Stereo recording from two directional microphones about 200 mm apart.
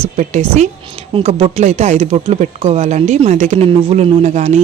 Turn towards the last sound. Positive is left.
turn(degrees=-35)  # may be behind; listen again after turning